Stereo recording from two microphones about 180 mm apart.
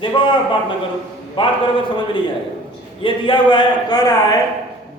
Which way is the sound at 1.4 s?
30° left (ahead or behind).